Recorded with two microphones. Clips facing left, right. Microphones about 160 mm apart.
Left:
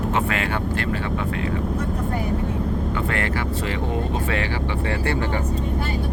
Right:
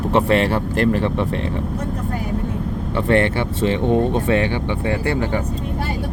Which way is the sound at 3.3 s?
25° right (ahead or behind).